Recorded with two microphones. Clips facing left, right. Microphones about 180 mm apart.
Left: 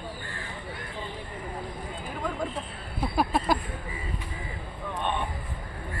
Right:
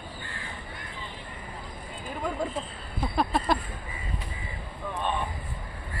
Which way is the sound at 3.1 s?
5° left (ahead or behind).